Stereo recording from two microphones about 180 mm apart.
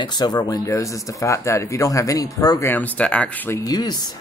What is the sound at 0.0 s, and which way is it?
Speech, 25° left (ahead or behind).